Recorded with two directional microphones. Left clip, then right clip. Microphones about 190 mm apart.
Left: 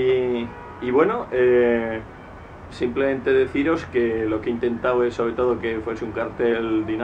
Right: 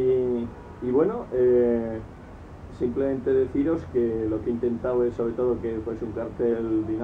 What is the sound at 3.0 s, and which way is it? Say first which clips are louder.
Speech: left 4 dB; 20° left (ahead or behind).